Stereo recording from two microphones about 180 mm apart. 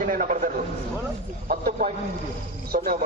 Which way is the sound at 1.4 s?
50° right (ahead or behind).